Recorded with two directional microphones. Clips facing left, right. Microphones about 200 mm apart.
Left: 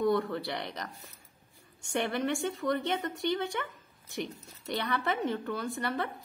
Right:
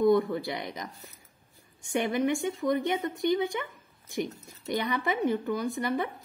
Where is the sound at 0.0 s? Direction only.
15° right (ahead or behind).